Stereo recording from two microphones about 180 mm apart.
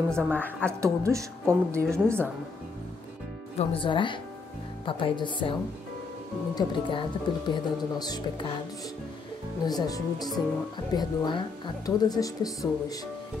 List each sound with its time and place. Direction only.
0.1 s a woman's voice: 5° left (ahead or behind)
0.7 s a woman's voice: 15° right (ahead or behind)
3.5 s a woman's voice: 30° left (ahead or behind)
9.7 s a woman's voice: 20° left (ahead or behind)